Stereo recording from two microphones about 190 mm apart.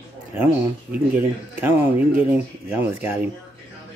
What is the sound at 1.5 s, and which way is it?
Speech, 10° right (ahead or behind).